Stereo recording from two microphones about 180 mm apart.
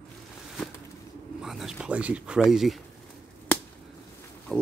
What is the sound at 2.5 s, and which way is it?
Speech, centre (ahead or behind).